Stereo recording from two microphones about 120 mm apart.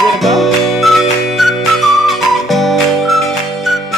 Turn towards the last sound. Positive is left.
turn(degrees=0)  # may be behind; listen again after turning